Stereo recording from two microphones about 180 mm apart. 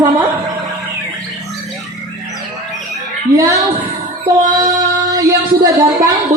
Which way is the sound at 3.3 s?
15° right (ahead or behind).